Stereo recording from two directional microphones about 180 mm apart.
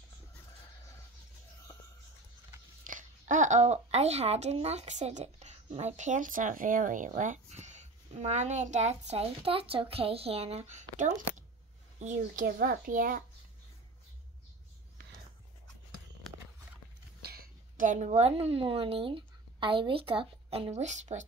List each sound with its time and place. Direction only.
2.9 s a woman's voice: 45° right (ahead or behind)
12.4 s a child's voice: 55° right (ahead or behind)
17.2 s a woman's voice: 60° right (ahead or behind); by 21.3 s 40° right (ahead or behind)